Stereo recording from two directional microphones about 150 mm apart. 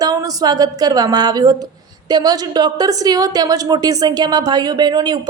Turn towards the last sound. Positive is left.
turn(degrees=-30)  # may be behind; listen again after turning